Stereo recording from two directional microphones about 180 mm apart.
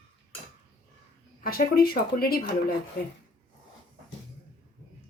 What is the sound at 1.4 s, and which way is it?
Speech, 55° left (ahead or behind).